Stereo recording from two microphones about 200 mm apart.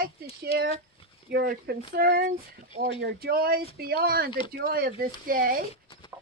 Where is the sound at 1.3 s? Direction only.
55° right (ahead or behind).